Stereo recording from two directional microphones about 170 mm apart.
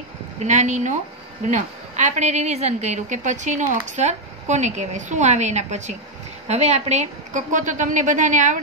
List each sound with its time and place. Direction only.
0.4 s a woman's voice: 45° right (ahead or behind)